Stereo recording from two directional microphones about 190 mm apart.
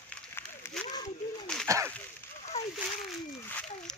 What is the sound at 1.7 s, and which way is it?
Speech, 15° right (ahead or behind).